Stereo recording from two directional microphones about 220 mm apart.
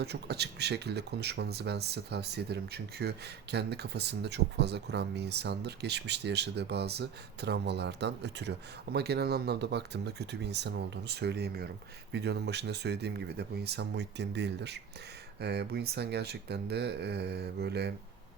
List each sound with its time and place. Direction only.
0.0 s speech: 50° right (ahead or behind)